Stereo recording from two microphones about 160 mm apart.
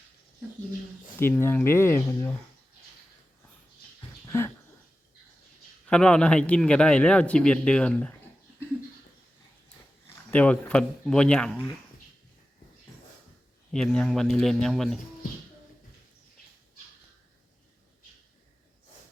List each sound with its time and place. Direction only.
1.2 s a man's voice: 15° left (ahead or behind)
4.3 s a sound: 15° left (ahead or behind)
5.8 s a man's voice: 5° left (ahead or behind)
10.3 s a man's voice: 10° left (ahead or behind)
13.7 s speech: 5° left (ahead or behind)